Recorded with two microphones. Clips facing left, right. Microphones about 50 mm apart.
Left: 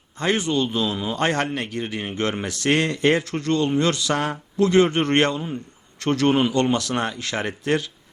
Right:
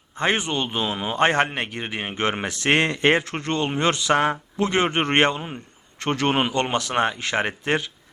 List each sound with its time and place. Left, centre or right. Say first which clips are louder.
0.2 s speech: left 1 dB; right